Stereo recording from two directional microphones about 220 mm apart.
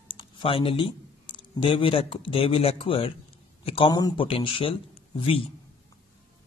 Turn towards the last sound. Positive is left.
turn(degrees=25)  # may be behind; listen again after turning